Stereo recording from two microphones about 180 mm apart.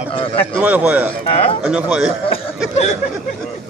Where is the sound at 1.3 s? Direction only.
30° left (ahead or behind).